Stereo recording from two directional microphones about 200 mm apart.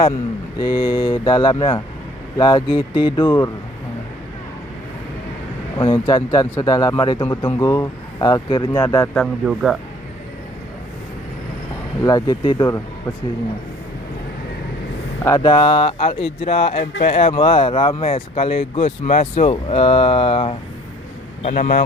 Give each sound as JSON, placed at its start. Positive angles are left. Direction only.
{"t": 0.6, "sound": "speech", "side_deg": 25}
{"t": 5.7, "sound": "speech", "side_deg": 20}
{"t": 9.5, "sound": "speech", "side_deg": -5}
{"t": 12.0, "sound": "speech", "side_deg": 20}
{"t": 15.2, "sound": "speech", "side_deg": 15}
{"t": 15.6, "sound": "speech", "side_deg": 25}
{"t": 21.4, "sound": "speech", "side_deg": 40}